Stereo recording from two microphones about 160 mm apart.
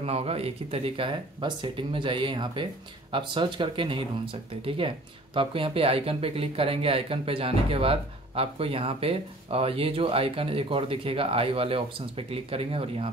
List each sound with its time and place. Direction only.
0.0 s speech: 40° right (ahead or behind)